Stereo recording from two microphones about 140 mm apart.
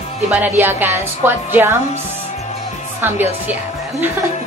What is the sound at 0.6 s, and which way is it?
A woman's voice, 15° right (ahead or behind).